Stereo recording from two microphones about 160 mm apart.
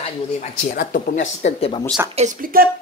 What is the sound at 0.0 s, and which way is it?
Speech, 50° left (ahead or behind).